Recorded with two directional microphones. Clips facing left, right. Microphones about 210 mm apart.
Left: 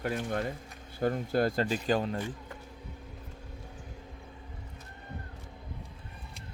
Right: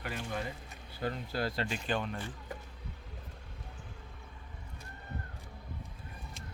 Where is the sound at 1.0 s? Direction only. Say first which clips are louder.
Left 7 dB; 45° left (ahead or behind).